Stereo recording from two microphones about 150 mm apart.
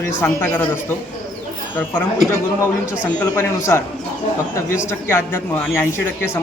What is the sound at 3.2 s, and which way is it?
Speech, 15° left (ahead or behind).